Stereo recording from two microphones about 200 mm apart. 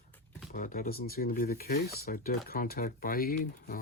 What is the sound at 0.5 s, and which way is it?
Speech, 45° left (ahead or behind).